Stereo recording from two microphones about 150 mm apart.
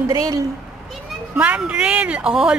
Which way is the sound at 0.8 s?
5° right (ahead or behind).